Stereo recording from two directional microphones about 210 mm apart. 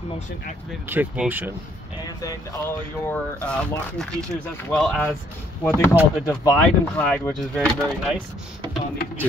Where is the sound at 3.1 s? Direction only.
5° left (ahead or behind).